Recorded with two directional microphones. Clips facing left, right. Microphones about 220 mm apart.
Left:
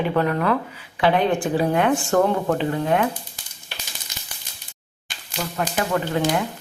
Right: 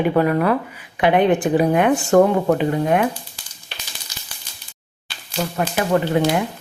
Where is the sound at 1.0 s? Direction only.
20° right (ahead or behind).